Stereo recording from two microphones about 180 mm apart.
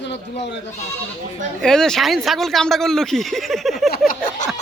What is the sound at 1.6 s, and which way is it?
Speech, 5° left (ahead or behind).